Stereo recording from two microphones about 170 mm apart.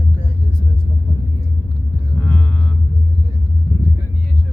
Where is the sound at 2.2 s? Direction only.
10° left (ahead or behind).